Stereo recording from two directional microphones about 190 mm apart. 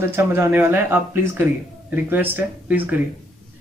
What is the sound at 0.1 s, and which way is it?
Speech, 10° right (ahead or behind).